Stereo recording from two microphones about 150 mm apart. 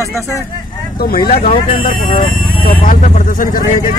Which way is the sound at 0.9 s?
90° left.